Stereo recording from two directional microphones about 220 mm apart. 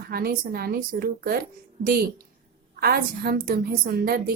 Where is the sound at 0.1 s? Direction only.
45° right (ahead or behind).